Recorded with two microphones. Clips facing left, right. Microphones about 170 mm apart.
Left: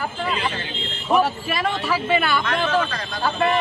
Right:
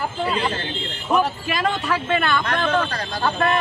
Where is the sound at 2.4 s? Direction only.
35° right (ahead or behind).